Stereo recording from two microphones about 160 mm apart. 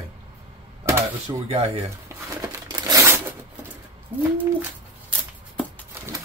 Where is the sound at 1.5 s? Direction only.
40° right (ahead or behind).